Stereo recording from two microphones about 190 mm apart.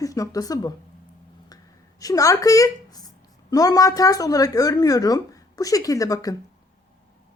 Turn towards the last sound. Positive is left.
turn(degrees=20)  # may be behind; listen again after turning